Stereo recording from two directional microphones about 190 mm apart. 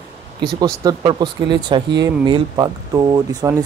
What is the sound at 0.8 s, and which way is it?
Speech, 25° right (ahead or behind).